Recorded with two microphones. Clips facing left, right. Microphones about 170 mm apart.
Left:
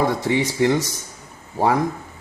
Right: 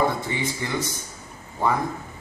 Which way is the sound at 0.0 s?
85° left.